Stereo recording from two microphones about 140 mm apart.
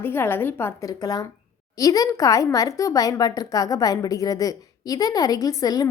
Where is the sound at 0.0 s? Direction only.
15° left (ahead or behind).